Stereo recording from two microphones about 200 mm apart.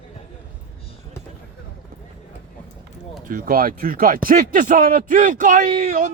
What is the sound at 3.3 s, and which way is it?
Speech, 45° right (ahead or behind).